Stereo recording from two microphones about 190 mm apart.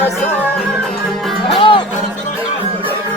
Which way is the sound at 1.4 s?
25° left (ahead or behind).